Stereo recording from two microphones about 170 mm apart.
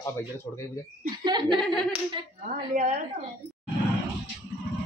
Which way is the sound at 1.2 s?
25° right (ahead or behind).